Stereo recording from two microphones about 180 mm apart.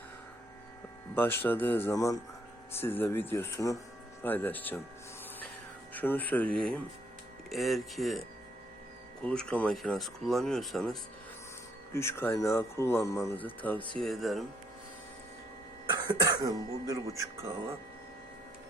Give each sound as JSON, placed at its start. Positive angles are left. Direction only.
{"t": 1.1, "sound": "speech", "side_deg": 10}
{"t": 5.9, "sound": "speech", "side_deg": 10}
{"t": 9.2, "sound": "speech", "side_deg": 5}
{"t": 11.9, "sound": "speech", "side_deg": 15}
{"t": 15.9, "sound": "speech", "side_deg": -25}